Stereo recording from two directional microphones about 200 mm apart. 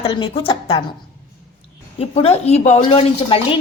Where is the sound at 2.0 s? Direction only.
30° left (ahead or behind).